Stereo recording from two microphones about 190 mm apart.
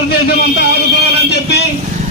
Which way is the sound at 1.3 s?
60° left (ahead or behind).